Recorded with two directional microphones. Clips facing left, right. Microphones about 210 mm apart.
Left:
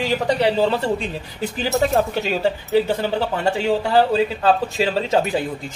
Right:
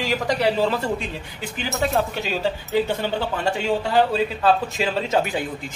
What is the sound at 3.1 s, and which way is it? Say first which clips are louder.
Speech: left 3 dB; 35° left (ahead or behind).